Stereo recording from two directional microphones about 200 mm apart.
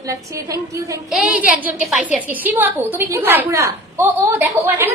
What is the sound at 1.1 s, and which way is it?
A woman's voice, 5° right (ahead or behind).